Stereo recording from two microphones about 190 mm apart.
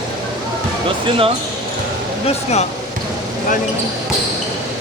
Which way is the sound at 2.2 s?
35° left (ahead or behind).